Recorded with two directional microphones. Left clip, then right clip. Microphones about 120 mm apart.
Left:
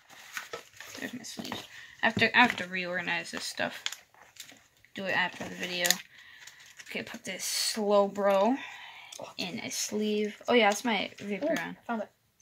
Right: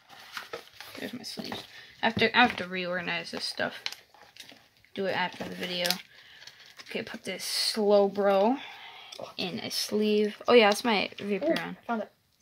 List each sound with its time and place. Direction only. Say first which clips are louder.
1.2 s speech: right 1 dB; 60° right (ahead or behind); by 3.8 s 35° right (ahead or behind)
4.9 s speech: even; 50° right (ahead or behind)
6.9 s speech: right 2 dB; 45° right (ahead or behind)
9.4 s speech: right 3 dB; 65° right (ahead or behind)
11.4 s speech: right 1 dB; 45° right (ahead or behind)
11.8 s speech: right 2 dB; 30° right (ahead or behind)